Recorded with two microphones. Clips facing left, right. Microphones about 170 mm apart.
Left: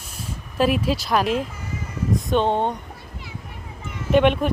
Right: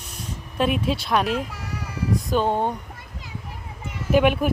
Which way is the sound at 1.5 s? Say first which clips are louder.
Even; 75° right (ahead or behind).